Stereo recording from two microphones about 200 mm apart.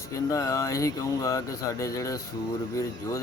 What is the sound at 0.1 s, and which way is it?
Speech, 15° left (ahead or behind).